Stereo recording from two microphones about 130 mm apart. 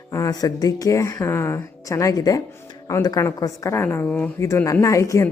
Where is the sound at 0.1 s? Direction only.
25° left (ahead or behind).